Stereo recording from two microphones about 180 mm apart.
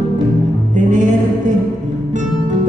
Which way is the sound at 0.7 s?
45° right (ahead or behind).